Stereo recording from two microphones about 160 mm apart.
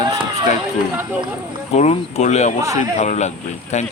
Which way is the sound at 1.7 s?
45° left (ahead or behind).